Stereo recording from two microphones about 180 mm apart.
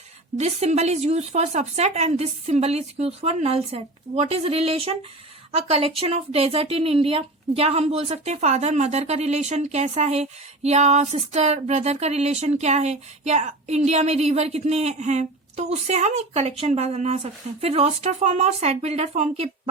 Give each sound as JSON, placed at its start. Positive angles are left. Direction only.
{"t": 0.3, "sound": "speech", "side_deg": -35}